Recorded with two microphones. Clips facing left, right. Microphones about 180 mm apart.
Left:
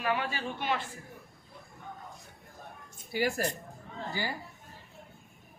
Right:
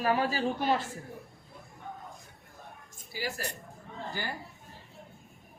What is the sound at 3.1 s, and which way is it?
Speech, 55° left (ahead or behind).